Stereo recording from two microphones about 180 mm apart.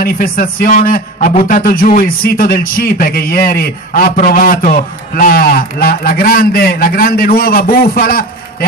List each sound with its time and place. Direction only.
0.0 s a man's voice: 55° left (ahead or behind)